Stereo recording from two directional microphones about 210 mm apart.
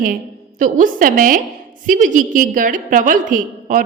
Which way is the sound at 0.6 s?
40° right (ahead or behind).